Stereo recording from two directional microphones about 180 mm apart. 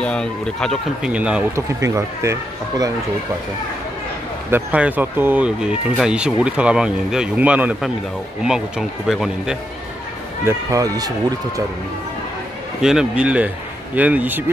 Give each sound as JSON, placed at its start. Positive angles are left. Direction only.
{"t": 0.0, "sound": "speech", "side_deg": 5}
{"t": 4.5, "sound": "speech", "side_deg": -10}
{"t": 10.4, "sound": "speech", "side_deg": -20}
{"t": 12.8, "sound": "speech", "side_deg": -5}